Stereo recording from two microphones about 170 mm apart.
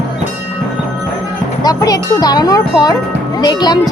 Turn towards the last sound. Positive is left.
turn(degrees=25)  # may be behind; listen again after turning